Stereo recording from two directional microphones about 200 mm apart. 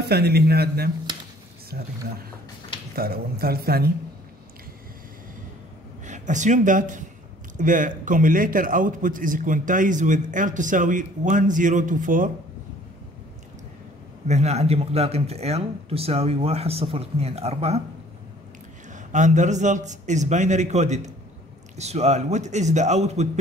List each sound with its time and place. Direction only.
0.0 s a man's voice: 55° right (ahead or behind)
3.0 s a man's voice: 50° right (ahead or behind)
6.0 s a man's voice: 35° right (ahead or behind)
14.2 s a man's voice: 35° right (ahead or behind)
18.9 s a man's voice: 40° right (ahead or behind)